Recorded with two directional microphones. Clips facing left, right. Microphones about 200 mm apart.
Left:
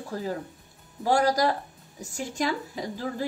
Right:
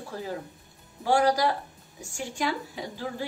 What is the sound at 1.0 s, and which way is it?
A woman's voice, 40° left (ahead or behind).